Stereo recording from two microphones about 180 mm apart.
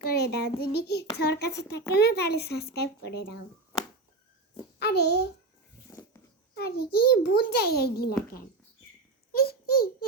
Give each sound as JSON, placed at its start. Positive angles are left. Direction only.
{"t": 0.0, "sound": "a child's voice", "side_deg": 60}
{"t": 4.8, "sound": "a child's voice", "side_deg": 65}
{"t": 6.6, "sound": "a child's voice", "side_deg": 60}